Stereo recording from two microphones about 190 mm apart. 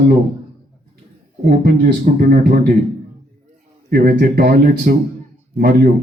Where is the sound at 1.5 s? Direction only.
55° right (ahead or behind).